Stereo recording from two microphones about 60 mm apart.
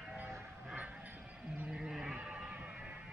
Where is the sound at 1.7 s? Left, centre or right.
Centre.